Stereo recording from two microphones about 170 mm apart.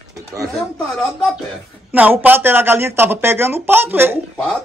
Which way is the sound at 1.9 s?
10° right (ahead or behind).